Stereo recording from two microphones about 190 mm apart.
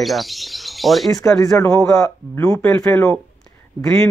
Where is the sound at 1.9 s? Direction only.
15° left (ahead or behind).